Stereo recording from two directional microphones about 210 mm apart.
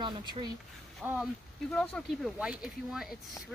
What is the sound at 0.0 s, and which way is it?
Speech, 20° right (ahead or behind).